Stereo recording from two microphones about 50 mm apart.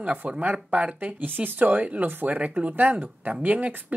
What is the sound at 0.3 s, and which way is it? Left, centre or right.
Speech, right.